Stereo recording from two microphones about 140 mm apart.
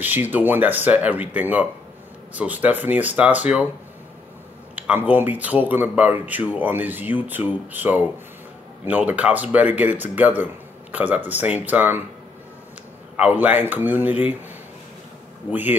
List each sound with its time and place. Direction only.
0.0 s speech: 15° right (ahead or behind)
4.7 s speech: 10° right (ahead or behind)
13.1 s speech: 10° right (ahead or behind)